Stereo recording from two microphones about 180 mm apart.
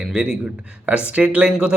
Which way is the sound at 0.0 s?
5° right (ahead or behind).